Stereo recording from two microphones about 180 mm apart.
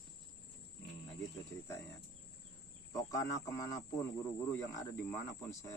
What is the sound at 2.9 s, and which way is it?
Speech, 20° left (ahead or behind).